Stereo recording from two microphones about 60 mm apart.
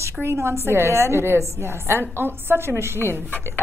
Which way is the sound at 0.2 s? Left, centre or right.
Right.